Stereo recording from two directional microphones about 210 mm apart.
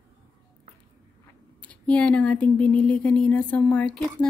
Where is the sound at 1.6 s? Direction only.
5° left (ahead or behind).